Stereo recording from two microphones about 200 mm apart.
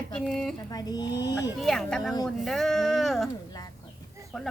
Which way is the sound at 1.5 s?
Centre (ahead or behind).